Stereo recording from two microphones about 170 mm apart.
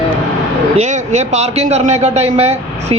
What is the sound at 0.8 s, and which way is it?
A man's voice, 40° right (ahead or behind).